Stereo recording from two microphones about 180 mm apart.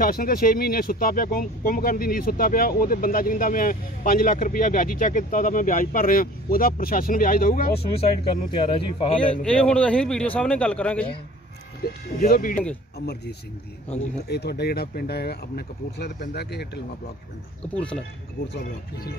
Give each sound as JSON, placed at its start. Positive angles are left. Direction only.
{"t": 0.0, "sound": "speech", "side_deg": 55}
{"t": 8.0, "sound": "speech", "side_deg": 30}
{"t": 9.3, "sound": "speech", "side_deg": 5}
{"t": 11.8, "sound": "speech", "side_deg": 55}
{"t": 13.0, "sound": "speech", "side_deg": 65}
{"t": 17.7, "sound": "speech", "side_deg": 5}